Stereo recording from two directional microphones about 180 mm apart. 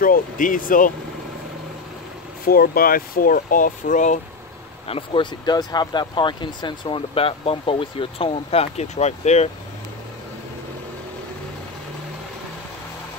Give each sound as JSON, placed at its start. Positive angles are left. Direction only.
{"t": 0.0, "sound": "speech", "side_deg": 50}
{"t": 2.4, "sound": "speech", "side_deg": 55}
{"t": 4.8, "sound": "speech", "side_deg": 30}